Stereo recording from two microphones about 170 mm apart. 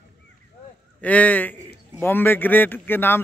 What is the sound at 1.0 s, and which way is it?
Speech, 10° left (ahead or behind).